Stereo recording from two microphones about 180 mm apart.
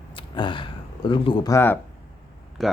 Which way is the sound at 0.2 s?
25° left (ahead or behind).